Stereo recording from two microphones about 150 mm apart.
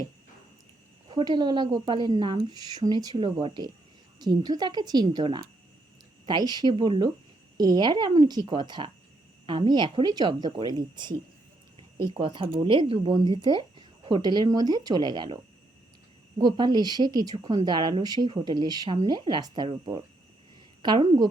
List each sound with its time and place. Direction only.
1.1 s speech: 30° right (ahead or behind)
16.4 s speech: 30° right (ahead or behind)